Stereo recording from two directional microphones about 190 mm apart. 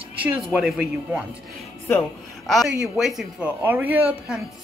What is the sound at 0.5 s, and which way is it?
Speech, centre (ahead or behind).